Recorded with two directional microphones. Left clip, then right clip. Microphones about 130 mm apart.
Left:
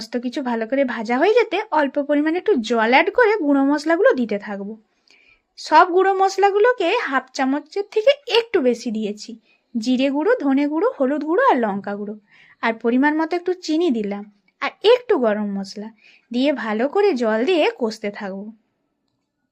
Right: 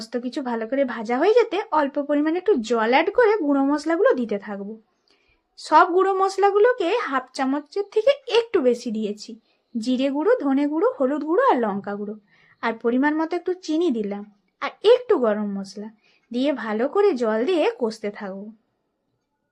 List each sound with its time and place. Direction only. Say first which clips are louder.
0.0 s speech: left 3 dB; 15° left (ahead or behind)